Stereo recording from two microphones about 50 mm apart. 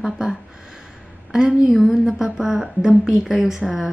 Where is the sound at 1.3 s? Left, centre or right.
Centre.